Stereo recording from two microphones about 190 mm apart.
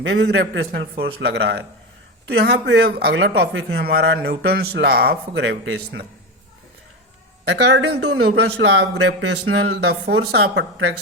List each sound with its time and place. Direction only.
0.0 s speech: 65° right (ahead or behind)
7.4 s speech: 65° right (ahead or behind)